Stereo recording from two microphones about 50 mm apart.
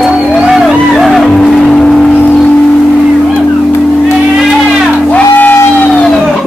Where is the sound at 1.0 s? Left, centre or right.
Centre.